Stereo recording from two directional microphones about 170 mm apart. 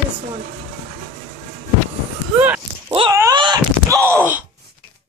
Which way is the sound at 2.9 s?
30° right (ahead or behind).